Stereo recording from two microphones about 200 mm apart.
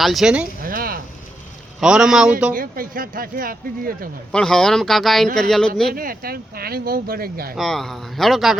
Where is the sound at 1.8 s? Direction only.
5° right (ahead or behind).